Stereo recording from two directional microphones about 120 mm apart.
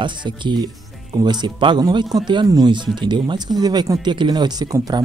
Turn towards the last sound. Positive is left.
turn(degrees=-30)  # may be behind; listen again after turning